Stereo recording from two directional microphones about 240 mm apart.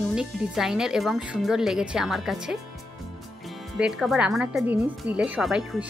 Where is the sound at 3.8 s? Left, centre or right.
Centre.